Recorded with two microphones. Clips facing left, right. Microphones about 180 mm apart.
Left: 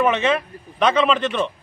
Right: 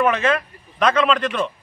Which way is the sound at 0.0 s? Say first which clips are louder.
Even; centre (ahead or behind).